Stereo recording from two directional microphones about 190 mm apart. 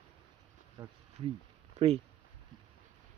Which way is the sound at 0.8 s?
25° right (ahead or behind).